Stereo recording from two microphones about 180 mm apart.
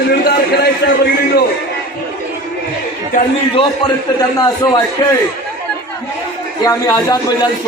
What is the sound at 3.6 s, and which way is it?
A man's voice, 25° left (ahead or behind).